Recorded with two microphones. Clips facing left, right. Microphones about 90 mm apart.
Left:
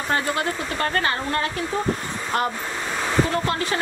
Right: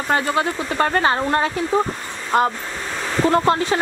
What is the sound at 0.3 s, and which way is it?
Speech, 25° right (ahead or behind).